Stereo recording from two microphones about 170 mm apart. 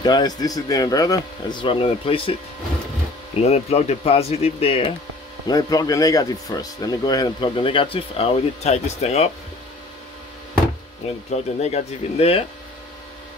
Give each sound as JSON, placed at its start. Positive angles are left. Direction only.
{"t": 0.0, "sound": "speech", "side_deg": 25}
{"t": 3.4, "sound": "speech", "side_deg": 40}
{"t": 5.5, "sound": "speech", "side_deg": 20}
{"t": 11.2, "sound": "speech", "side_deg": 40}